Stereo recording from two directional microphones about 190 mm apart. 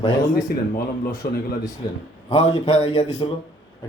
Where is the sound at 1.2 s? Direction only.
50° left (ahead or behind).